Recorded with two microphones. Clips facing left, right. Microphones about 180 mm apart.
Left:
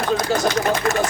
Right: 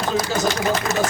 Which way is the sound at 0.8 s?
65° left (ahead or behind).